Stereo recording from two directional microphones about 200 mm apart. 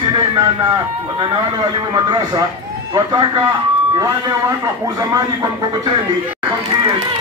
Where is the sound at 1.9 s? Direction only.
20° right (ahead or behind).